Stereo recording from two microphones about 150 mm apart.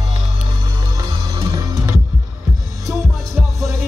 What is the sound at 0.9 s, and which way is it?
Music, 25° right (ahead or behind).